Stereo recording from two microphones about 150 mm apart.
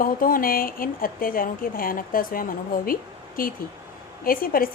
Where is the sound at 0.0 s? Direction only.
70° left (ahead or behind).